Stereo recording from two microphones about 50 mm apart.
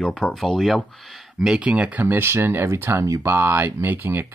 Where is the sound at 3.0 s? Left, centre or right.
Right.